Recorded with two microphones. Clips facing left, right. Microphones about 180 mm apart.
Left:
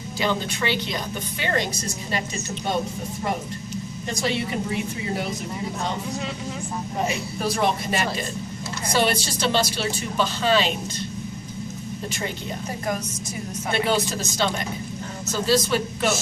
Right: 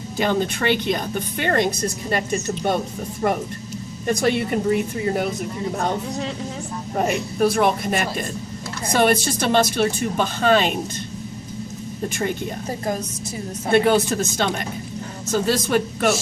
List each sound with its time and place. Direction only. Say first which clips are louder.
0.2 s a woman's voice: right 4 dB; 50° right (ahead or behind)
4.0 s speech: right 6 dB; 55° right (ahead or behind)
6.9 s a woman's voice: right 6 dB; 55° right (ahead or behind)
13.7 s a woman's voice: right 7 dB; 50° right (ahead or behind)